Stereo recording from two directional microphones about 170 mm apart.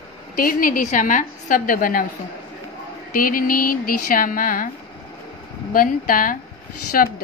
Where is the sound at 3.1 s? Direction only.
55° left (ahead or behind).